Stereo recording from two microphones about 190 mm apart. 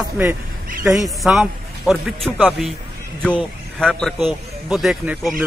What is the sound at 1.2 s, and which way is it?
A man's voice, centre (ahead or behind).